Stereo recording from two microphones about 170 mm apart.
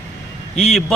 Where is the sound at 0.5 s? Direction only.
35° left (ahead or behind).